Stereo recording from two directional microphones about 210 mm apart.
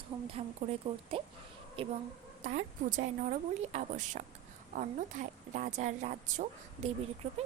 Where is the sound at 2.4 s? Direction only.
40° right (ahead or behind).